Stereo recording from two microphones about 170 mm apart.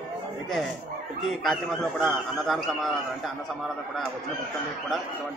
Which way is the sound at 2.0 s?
Centre (ahead or behind).